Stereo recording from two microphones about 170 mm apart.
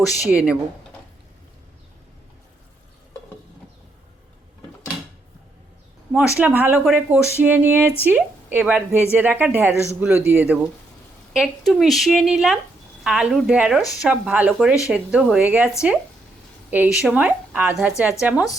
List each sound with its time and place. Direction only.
0.3 s speech: 5° right (ahead or behind)
6.4 s speech: 10° right (ahead or behind)
9.7 s a man's voice: 15° left (ahead or behind)
10.0 s a woman's voice: 10° right (ahead or behind)